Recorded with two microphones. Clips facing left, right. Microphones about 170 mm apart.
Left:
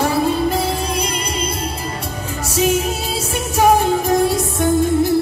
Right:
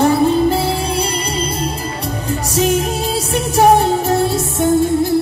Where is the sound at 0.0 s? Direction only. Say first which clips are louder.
Right 5 dB; 30° right (ahead or behind).